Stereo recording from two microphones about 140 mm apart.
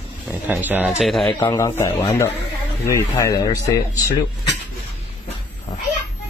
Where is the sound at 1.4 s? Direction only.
20° left (ahead or behind).